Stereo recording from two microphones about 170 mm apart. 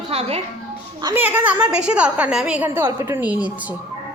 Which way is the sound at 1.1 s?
10° right (ahead or behind).